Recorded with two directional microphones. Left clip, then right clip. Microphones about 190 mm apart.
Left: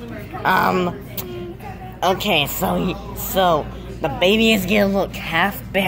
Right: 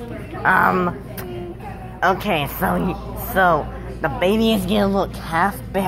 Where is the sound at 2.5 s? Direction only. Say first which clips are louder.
Even; 5° left (ahead or behind).